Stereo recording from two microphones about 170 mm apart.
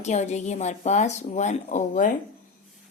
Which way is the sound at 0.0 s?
40° left (ahead or behind).